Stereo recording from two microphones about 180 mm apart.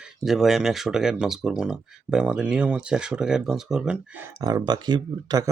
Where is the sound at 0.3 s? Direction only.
Centre (ahead or behind).